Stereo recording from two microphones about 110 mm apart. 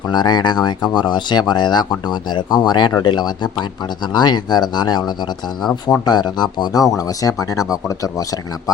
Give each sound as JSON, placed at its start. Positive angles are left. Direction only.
{"t": 0.1, "sound": "speech", "side_deg": 40}